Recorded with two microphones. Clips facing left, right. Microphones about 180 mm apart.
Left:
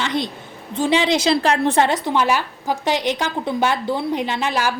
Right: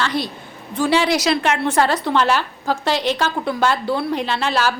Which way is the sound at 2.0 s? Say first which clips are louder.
Right 1 dB; 10° left (ahead or behind).